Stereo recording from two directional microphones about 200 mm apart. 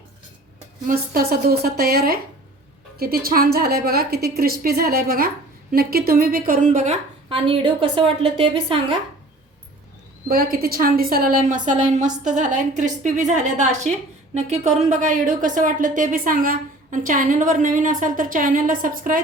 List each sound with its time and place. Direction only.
0.9 s a woman's voice: 50° right (ahead or behind); by 9.0 s 25° right (ahead or behind)
10.2 s a woman's voice: 50° right (ahead or behind)